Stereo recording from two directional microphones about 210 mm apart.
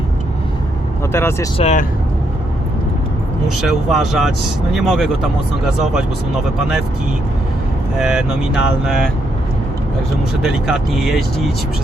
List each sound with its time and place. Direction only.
1.1 s speech: 10° left (ahead or behind)
1.5 s speech: 30° left (ahead or behind)
3.6 s speech: centre (ahead or behind)
7.9 s speech: 5° right (ahead or behind)
10.4 s speech: centre (ahead or behind)